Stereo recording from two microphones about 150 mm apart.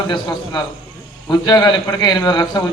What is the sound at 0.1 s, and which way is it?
A man's voice, 30° left (ahead or behind).